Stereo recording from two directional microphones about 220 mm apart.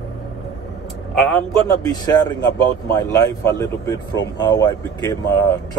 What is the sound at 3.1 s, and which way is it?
Speech, 15° left (ahead or behind).